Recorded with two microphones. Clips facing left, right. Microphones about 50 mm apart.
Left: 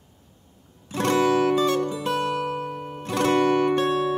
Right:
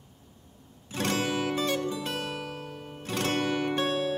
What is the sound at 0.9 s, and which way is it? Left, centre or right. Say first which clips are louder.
Music: left 8 dB; left.